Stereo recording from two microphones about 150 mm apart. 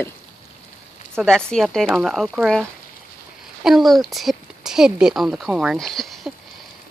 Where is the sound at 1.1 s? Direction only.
5° left (ahead or behind).